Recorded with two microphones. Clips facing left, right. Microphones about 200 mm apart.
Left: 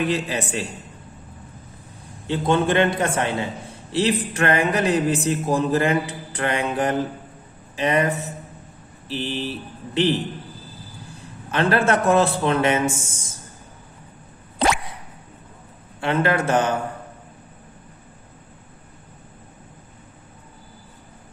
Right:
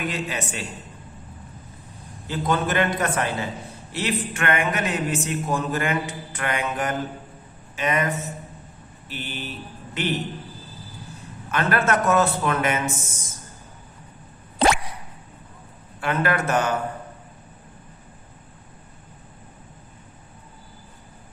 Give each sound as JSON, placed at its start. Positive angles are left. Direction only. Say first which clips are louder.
{"t": 0.1, "sound": "a man's voice", "louder": "left 5 dB", "side_deg": 30}
{"t": 2.2, "sound": "a man's voice", "louder": "left 4 dB", "side_deg": 25}
{"t": 11.5, "sound": "a man's voice", "louder": "left 3 dB", "side_deg": 30}
{"t": 16.0, "sound": "a man's voice", "louder": "left 3 dB", "side_deg": 25}